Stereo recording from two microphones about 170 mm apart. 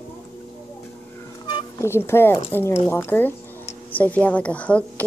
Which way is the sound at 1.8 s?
15° left (ahead or behind).